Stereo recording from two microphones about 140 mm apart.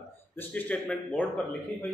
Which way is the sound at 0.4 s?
10° left (ahead or behind).